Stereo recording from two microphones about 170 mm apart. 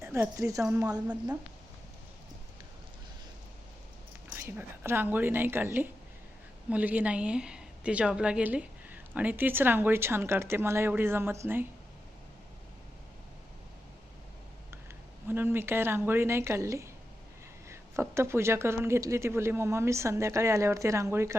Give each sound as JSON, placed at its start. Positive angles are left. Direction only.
{"t": 0.0, "sound": "a woman's voice", "side_deg": -15}
{"t": 4.3, "sound": "a woman's voice", "side_deg": -15}
{"t": 15.3, "sound": "a woman's voice", "side_deg": -10}